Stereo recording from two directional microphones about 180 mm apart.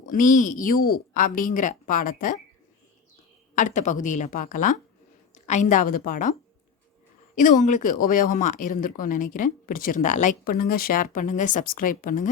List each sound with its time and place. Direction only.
0.1 s speech: 45° left (ahead or behind)
3.5 s a woman's voice: 45° left (ahead or behind)
7.3 s speech: 45° left (ahead or behind)